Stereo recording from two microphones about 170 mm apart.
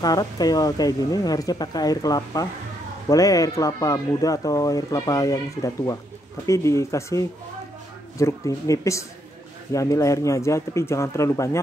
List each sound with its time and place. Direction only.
0.0 s a man's voice: 20° left (ahead or behind)